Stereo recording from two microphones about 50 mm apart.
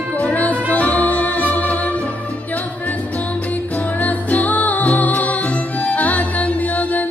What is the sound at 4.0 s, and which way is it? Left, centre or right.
Music, left.